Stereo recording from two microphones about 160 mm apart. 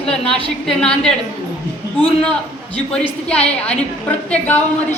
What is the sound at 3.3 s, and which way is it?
A woman's voice, 10° left (ahead or behind).